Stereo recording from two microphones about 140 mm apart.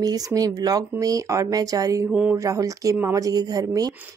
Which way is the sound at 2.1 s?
10° right (ahead or behind).